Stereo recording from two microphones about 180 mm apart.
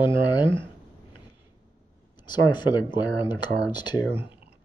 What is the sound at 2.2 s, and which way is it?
Speech, 25° left (ahead or behind).